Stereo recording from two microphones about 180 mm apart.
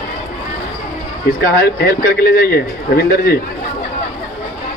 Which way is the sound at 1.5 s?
55° left (ahead or behind).